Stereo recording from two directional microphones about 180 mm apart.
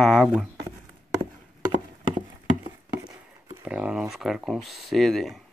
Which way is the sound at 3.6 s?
5° right (ahead or behind).